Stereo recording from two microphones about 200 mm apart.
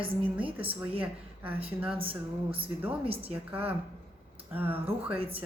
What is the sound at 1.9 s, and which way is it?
Speech, 25° right (ahead or behind).